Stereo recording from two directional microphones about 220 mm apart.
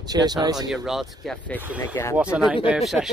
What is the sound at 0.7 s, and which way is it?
Speech, centre (ahead or behind).